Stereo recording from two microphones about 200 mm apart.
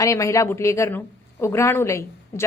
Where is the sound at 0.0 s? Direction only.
15° left (ahead or behind).